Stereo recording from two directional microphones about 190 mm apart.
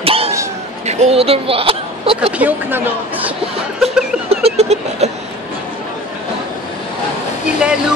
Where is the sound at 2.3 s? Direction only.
10° right (ahead or behind).